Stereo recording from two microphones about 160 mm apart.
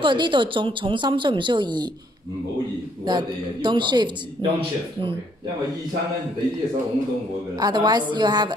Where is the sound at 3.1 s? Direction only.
30° right (ahead or behind).